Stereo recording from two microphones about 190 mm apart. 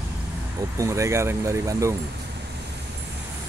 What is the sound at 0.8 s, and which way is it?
Speech, 15° right (ahead or behind).